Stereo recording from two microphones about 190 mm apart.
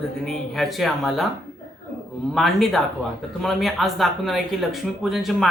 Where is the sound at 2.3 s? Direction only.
Centre (ahead or behind).